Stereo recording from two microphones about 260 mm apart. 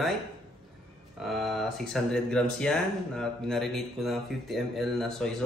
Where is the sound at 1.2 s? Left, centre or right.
Centre.